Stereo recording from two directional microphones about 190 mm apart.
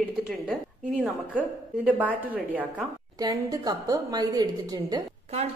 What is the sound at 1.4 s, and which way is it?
A woman's voice, 10° right (ahead or behind).